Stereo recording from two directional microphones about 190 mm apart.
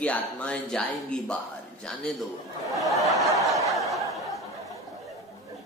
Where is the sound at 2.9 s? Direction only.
Centre (ahead or behind).